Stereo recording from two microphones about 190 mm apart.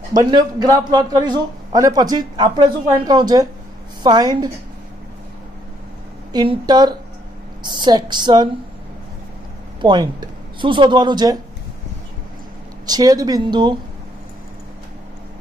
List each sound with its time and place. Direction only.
0.1 s speech: 20° right (ahead or behind)
6.3 s speech: 25° right (ahead or behind)
9.8 s speech: 25° right (ahead or behind)
12.8 s speech: 20° right (ahead or behind)